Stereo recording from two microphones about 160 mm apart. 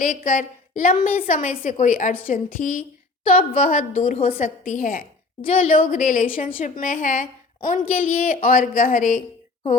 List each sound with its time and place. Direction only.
0.0 s a woman's voice: 60° left (ahead or behind)